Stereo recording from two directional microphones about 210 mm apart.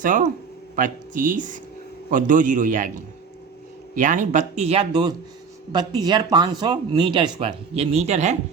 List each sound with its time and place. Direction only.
0.0 s speech: 40° right (ahead or behind)